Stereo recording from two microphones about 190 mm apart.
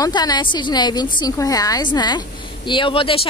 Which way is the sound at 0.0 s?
20° left (ahead or behind).